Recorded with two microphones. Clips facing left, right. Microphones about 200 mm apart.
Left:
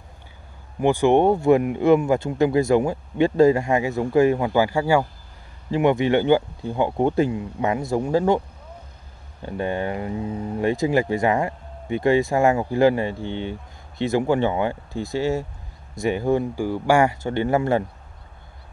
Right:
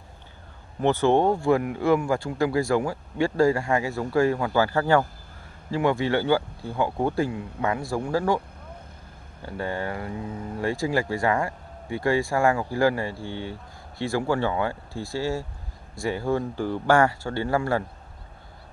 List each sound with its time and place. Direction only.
0.7 s speech: 15° left (ahead or behind)
9.4 s speech: 20° left (ahead or behind)